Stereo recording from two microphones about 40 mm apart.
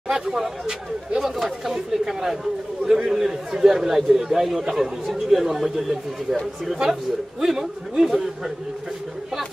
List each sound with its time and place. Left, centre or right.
0.1 s speech: centre
1.2 s a man's voice: centre